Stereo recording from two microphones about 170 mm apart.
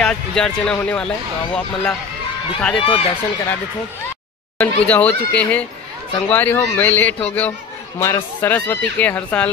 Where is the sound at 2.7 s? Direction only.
35° left (ahead or behind).